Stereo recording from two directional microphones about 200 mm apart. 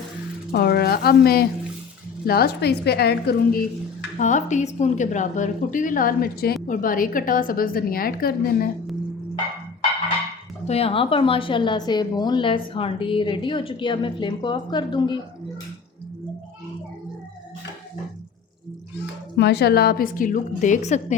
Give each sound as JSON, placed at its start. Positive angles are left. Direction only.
{"t": 0.5, "sound": "a woman's voice", "side_deg": 55}
{"t": 4.2, "sound": "a woman's voice", "side_deg": 35}
{"t": 10.7, "sound": "a woman's voice", "side_deg": 30}
{"t": 19.4, "sound": "a woman's voice", "side_deg": 55}